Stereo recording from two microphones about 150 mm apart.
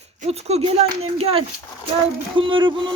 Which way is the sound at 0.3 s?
45° right (ahead or behind).